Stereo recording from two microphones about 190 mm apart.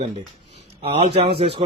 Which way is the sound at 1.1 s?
25° right (ahead or behind).